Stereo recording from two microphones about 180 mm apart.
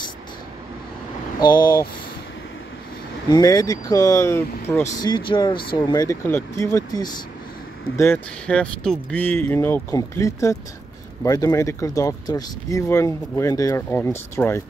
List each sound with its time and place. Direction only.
1.4 s speech: 25° left (ahead or behind)
3.3 s speech: 20° left (ahead or behind)